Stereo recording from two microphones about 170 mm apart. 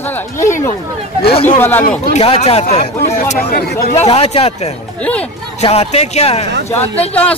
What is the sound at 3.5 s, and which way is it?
Speech, 60° left (ahead or behind).